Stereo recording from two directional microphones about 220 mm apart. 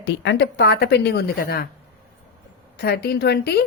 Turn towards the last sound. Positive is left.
turn(degrees=45)  # may be behind; listen again after turning